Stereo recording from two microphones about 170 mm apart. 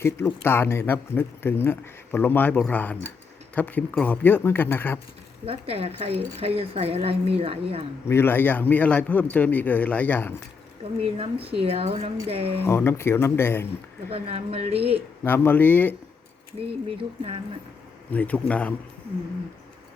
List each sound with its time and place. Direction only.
0.0 s speech: 15° left (ahead or behind)
5.5 s a woman's voice: 35° right (ahead or behind)
8.0 s speech: 15° left (ahead or behind)
11.0 s a woman's voice: 35° right (ahead or behind)
12.6 s speech: 15° left (ahead or behind)
14.1 s a woman's voice: 35° right (ahead or behind)
15.2 s speech: 10° left (ahead or behind)
16.6 s a woman's voice: 35° right (ahead or behind)
18.1 s speech: 10° left (ahead or behind)